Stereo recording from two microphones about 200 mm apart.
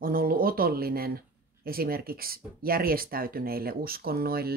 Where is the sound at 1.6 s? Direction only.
50° right (ahead or behind).